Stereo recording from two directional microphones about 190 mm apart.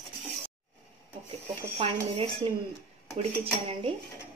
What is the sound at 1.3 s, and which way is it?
Speech, 30° right (ahead or behind).